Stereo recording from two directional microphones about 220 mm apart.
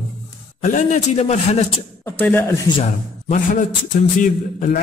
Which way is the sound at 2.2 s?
10° left (ahead or behind).